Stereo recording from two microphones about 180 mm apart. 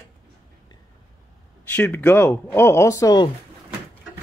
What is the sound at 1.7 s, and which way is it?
Speech, 10° left (ahead or behind).